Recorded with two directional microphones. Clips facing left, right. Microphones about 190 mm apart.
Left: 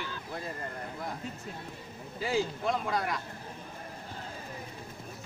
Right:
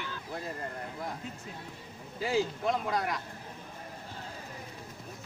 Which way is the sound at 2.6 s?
20° right (ahead or behind).